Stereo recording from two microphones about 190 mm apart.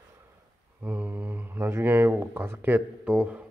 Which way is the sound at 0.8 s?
10° right (ahead or behind).